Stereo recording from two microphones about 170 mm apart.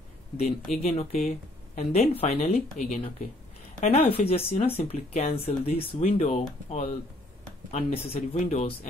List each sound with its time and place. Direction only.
0.4 s speech: 40° left (ahead or behind)